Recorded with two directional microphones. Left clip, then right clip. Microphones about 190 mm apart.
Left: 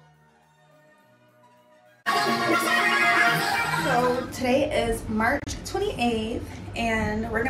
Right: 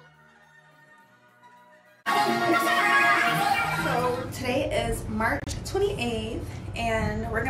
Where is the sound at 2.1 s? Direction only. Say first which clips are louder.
Even; 15° left (ahead or behind).